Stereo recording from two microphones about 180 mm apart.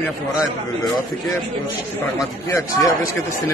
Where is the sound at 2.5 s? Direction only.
15° left (ahead or behind).